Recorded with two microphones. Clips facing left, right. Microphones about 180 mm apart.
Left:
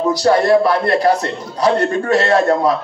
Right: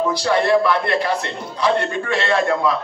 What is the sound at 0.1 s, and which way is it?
Speech, 40° left (ahead or behind).